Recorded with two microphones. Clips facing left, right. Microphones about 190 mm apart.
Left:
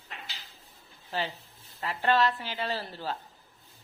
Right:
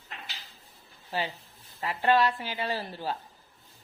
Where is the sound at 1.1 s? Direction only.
10° right (ahead or behind).